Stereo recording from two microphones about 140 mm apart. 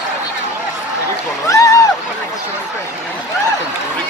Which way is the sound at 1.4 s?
25° left (ahead or behind).